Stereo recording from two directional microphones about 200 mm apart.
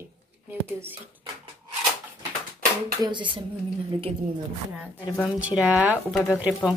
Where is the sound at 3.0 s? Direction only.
25° right (ahead or behind).